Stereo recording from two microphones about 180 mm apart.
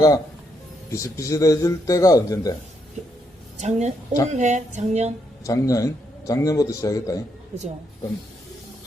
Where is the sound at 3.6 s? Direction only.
40° right (ahead or behind).